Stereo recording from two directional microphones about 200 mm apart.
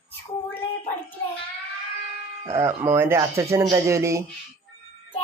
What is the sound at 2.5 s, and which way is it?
Speech, 10° right (ahead or behind).